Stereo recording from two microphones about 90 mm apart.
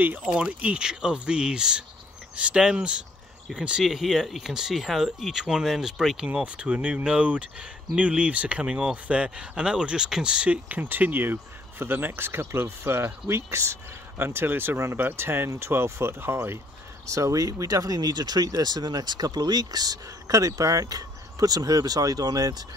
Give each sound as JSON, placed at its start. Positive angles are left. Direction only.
{"t": 0.2, "sound": "speech", "side_deg": -10}